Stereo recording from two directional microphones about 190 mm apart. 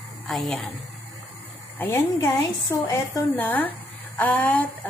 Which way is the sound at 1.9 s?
15° left (ahead or behind).